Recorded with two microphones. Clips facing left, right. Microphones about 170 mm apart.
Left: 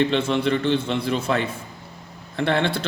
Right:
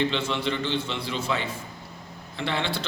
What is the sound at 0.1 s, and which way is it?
A man's voice, 50° left (ahead or behind).